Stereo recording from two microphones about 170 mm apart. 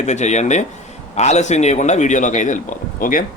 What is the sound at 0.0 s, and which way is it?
Speech, 45° left (ahead or behind).